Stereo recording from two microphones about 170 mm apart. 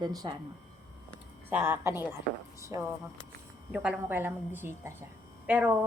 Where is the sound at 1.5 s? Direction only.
10° right (ahead or behind).